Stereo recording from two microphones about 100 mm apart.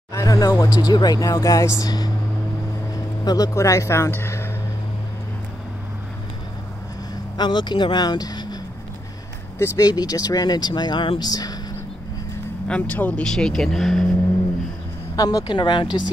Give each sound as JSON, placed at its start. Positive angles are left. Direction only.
{"t": 0.1, "sound": "a sound", "side_deg": 35}
{"t": 0.7, "sound": "speech", "side_deg": 45}
{"t": 3.3, "sound": "speech", "side_deg": 40}
{"t": 7.3, "sound": "speech", "side_deg": 50}
{"t": 9.8, "sound": "speech", "side_deg": 40}
{"t": 12.6, "sound": "speech", "side_deg": 15}
{"t": 13.2, "sound": "speech", "side_deg": 5}
{"t": 15.1, "sound": "speech", "side_deg": 40}